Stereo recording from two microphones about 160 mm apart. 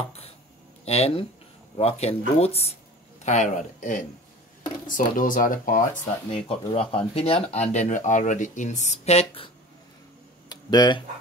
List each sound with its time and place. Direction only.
0.8 s speech: 40° left (ahead or behind)
3.3 s speech: 50° left (ahead or behind)
6.3 s speech: 35° left (ahead or behind)
10.5 s a sound: 25° left (ahead or behind)